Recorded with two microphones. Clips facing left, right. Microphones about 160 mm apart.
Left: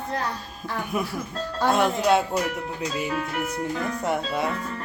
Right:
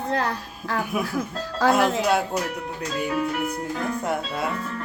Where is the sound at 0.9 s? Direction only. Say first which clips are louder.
Right 2 dB; 5° right (ahead or behind).